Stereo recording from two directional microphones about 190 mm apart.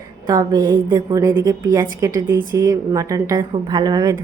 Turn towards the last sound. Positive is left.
turn(degrees=-20)  # may be behind; listen again after turning